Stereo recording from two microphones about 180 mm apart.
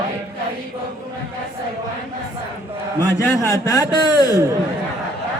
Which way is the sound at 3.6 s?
20° left (ahead or behind).